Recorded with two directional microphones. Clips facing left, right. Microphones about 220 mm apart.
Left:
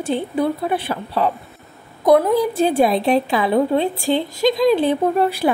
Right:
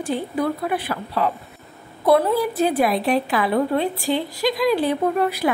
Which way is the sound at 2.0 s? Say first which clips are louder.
Left 3 dB; 15° left (ahead or behind).